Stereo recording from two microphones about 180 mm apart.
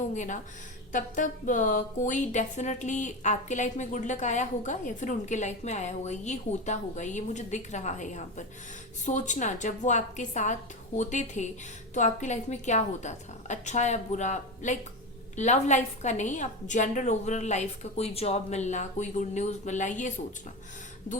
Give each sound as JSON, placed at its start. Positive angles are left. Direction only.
{"t": 0.1, "sound": "a woman's voice", "side_deg": 45}